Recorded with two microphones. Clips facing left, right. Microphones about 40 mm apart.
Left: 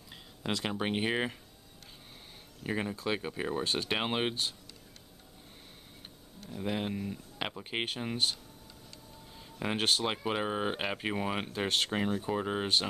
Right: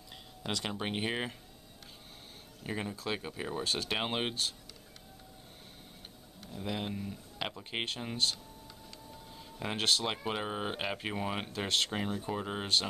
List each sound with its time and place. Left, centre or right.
0.4 s speech: left
0.7 s speech: centre
2.6 s speech: centre
6.5 s speech: centre
9.6 s speech: centre